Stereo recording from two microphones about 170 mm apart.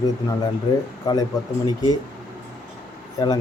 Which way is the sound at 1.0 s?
20° left (ahead or behind).